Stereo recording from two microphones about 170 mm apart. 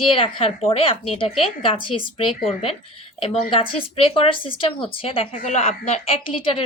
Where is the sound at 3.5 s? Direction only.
35° left (ahead or behind).